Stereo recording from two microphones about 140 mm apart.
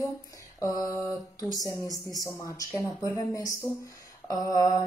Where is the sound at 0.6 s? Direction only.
25° left (ahead or behind).